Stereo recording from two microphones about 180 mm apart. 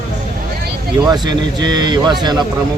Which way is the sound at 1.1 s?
25° right (ahead or behind).